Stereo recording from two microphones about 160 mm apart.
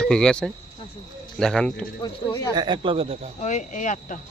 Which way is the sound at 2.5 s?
30° right (ahead or behind).